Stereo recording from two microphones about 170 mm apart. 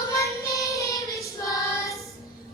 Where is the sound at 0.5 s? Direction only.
20° left (ahead or behind).